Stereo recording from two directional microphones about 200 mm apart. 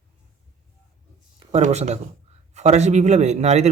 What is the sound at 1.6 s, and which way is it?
Speech, 35° right (ahead or behind).